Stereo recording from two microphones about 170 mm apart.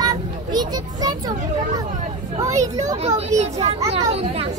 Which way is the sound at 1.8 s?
45° right (ahead or behind).